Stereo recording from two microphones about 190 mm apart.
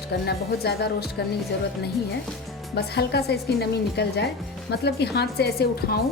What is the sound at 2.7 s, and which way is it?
A woman's voice, 60° left (ahead or behind).